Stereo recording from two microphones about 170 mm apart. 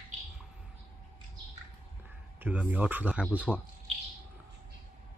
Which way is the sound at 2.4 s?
10° right (ahead or behind).